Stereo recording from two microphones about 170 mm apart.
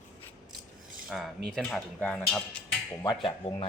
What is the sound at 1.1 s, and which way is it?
Speech, centre (ahead or behind).